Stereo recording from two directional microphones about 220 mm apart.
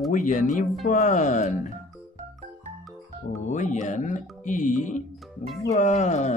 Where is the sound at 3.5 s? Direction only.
35° left (ahead or behind).